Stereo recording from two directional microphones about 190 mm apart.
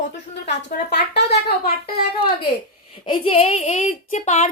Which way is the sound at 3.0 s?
30° left (ahead or behind).